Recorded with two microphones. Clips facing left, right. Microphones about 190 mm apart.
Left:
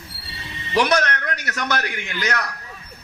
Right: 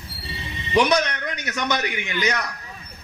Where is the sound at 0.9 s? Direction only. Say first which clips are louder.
Left 1 dB; 10° right (ahead or behind).